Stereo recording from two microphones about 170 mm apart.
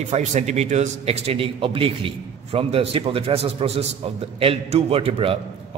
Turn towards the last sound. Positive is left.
turn(degrees=-35)  # may be behind; listen again after turning